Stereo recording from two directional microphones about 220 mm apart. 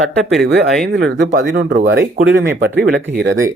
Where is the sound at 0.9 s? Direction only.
50° right (ahead or behind).